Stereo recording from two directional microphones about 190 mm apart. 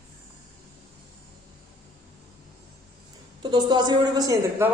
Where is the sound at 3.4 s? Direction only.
25° right (ahead or behind).